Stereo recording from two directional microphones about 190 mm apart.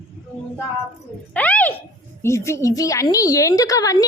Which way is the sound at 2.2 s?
15° left (ahead or behind).